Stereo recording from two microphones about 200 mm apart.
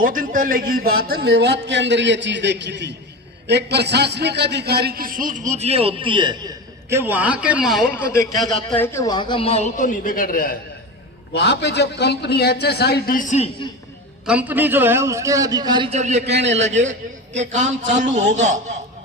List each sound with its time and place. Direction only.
0.0 s a man's voice: 45° right (ahead or behind); by 6.5 s 25° right (ahead or behind)
6.9 s a man's voice: 10° right (ahead or behind)
8.8 s a man's voice: 15° left (ahead or behind); by 10.6 s 45° left (ahead or behind)
11.3 s a man's voice: 55° left (ahead or behind); by 13.5 s 35° left (ahead or behind)
14.3 s a man's voice: 5° right (ahead or behind)
15.9 s a man's voice: 35° right (ahead or behind)
16.3 s a man's voice: 65° right (ahead or behind)
17.3 s a man's voice: 35° right (ahead or behind)